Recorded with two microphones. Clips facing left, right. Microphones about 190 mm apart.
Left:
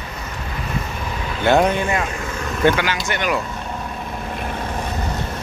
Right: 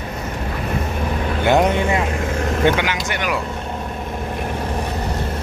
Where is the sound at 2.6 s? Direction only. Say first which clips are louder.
Left 1 dB; 20° right (ahead or behind).